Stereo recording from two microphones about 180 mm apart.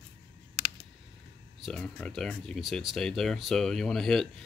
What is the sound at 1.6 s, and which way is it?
Speech, 5° left (ahead or behind).